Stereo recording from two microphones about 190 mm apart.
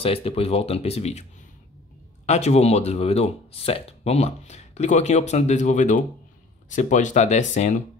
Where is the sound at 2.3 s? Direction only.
35° left (ahead or behind).